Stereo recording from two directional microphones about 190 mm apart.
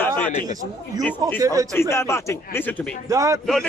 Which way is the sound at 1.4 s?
20° right (ahead or behind).